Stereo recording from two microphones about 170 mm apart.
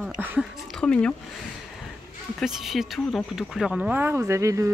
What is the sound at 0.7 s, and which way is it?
Speech, 5° left (ahead or behind).